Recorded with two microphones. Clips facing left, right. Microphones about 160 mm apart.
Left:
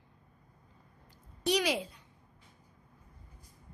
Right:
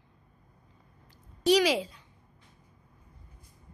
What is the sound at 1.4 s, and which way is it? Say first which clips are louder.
Speech: right 7 dB; 90° right.